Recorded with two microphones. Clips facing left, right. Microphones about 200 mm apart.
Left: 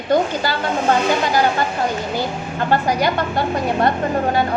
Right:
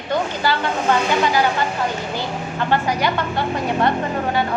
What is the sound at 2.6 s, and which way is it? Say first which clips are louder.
Speech: left 2 dB; 40° left (ahead or behind).